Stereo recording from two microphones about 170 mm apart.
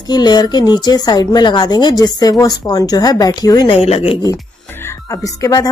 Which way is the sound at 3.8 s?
35° left (ahead or behind).